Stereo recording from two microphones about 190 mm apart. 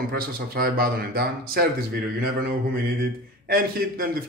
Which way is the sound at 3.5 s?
50° right (ahead or behind).